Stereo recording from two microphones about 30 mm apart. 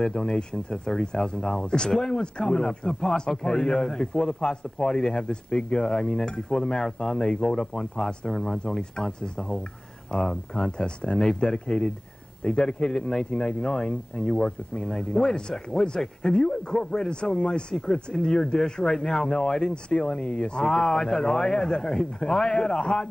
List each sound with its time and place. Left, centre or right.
0.0 s a man's voice: left
8.3 s a man's voice: centre
8.7 s a man's voice: left
10.1 s a man's voice: centre
14.9 s a man's voice: centre; by 17.7 s left
18.1 s speech: centre
18.6 s a man's voice: left
19.7 s speech: left
20.6 s a man's voice: centre; by 23.0 s left